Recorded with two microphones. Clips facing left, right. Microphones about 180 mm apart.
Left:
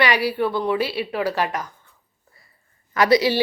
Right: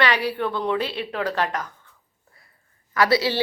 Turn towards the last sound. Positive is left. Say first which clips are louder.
# left 3 dB
turn(degrees=15)  # may be behind; listen again after turning